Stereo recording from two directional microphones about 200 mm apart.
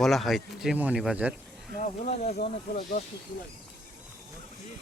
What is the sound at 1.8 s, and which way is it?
Speech, 35° left (ahead or behind).